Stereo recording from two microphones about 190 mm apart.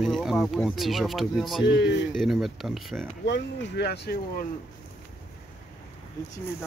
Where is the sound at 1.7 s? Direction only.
65° left (ahead or behind).